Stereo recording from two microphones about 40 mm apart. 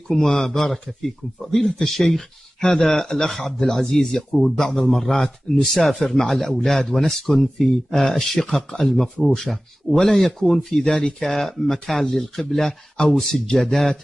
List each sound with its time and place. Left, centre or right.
0.1 s speech: centre
10.9 s speech: left
11.1 s speech: centre
12.6 s speech: left
13.1 s speech: centre